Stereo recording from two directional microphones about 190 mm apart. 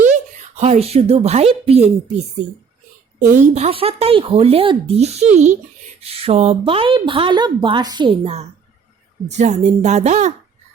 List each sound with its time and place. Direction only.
0.0 s a woman's voice: 40° right (ahead or behind)
3.3 s a woman's voice: 35° right (ahead or behind)